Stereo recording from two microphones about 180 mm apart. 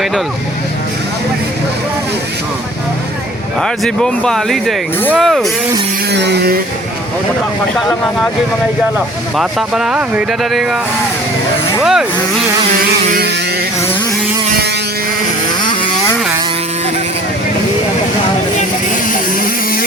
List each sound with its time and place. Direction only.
3.6 s speech: 5° left (ahead or behind)
6.1 s a sound: 70° right (ahead or behind)
9.3 s speech: centre (ahead or behind)
11.8 s speech: centre (ahead or behind)